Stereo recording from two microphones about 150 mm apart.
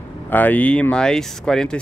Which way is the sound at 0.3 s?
10° left (ahead or behind).